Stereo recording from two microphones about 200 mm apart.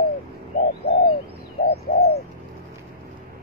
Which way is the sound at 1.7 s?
50° left (ahead or behind).